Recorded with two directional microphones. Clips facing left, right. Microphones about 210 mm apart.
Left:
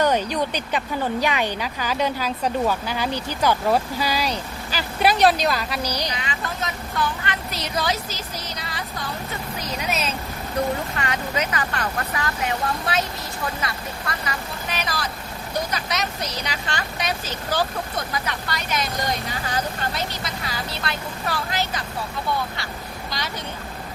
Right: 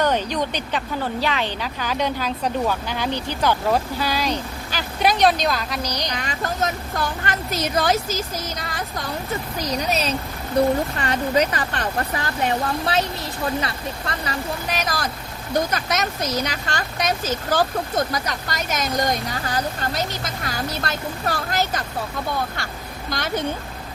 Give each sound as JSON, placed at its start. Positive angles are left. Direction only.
{"t": 0.0, "sound": "a woman's voice", "side_deg": 10}
{"t": 6.1, "sound": "speech", "side_deg": -45}
{"t": 9.7, "sound": "speech", "side_deg": -35}
{"t": 11.0, "sound": "speech", "side_deg": -35}
{"t": 13.6, "sound": "speech", "side_deg": -30}